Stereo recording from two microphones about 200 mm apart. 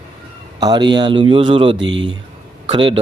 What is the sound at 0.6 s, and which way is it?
A man's voice, 20° right (ahead or behind).